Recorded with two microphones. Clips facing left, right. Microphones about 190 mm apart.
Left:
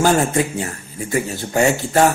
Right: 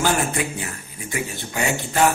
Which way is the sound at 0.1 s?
30° left (ahead or behind).